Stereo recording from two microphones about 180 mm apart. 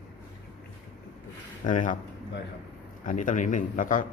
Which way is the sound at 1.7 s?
45° left (ahead or behind).